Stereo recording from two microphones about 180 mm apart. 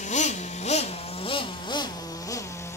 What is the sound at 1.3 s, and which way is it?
Vehicle, 25° left (ahead or behind).